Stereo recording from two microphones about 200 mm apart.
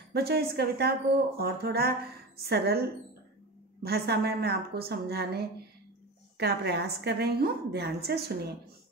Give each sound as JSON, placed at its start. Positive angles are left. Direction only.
{"t": 0.1, "sound": "speech", "side_deg": -50}
{"t": 3.8, "sound": "speech", "side_deg": -50}